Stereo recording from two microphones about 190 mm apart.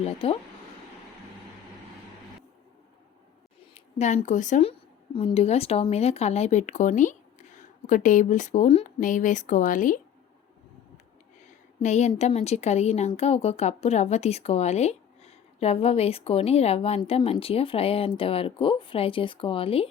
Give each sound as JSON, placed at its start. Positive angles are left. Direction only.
{"t": 0.0, "sound": "speech", "side_deg": 30}
{"t": 3.6, "sound": "speech", "side_deg": 35}
{"t": 11.8, "sound": "speech", "side_deg": 35}